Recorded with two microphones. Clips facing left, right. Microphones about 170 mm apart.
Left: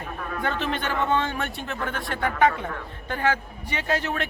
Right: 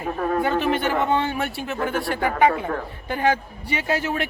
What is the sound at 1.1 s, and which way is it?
A man's voice, 10° right (ahead or behind).